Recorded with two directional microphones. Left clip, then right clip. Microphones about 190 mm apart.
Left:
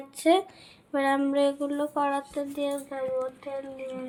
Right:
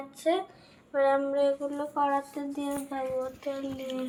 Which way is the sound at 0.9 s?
50° left (ahead or behind).